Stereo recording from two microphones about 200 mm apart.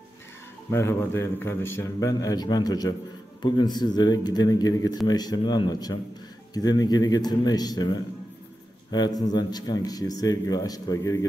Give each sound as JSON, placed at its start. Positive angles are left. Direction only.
{"t": 0.7, "sound": "a man's voice", "side_deg": 15}